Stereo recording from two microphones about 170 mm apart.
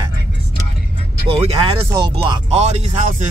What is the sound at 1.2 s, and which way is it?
Speech, 35° right (ahead or behind).